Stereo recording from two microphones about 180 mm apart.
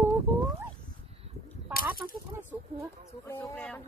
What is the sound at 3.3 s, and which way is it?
Speech, 10° left (ahead or behind).